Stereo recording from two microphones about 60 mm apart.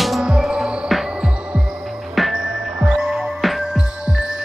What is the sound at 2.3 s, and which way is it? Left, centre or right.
Music, right.